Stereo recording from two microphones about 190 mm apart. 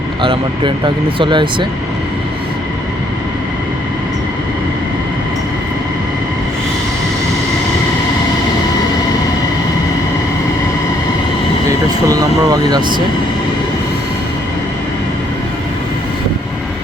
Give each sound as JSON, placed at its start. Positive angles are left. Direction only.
{"t": 0.2, "sound": "speech", "side_deg": -25}
{"t": 12.0, "sound": "speech", "side_deg": -20}